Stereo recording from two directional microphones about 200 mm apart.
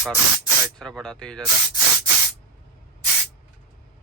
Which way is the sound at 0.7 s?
Centre (ahead or behind).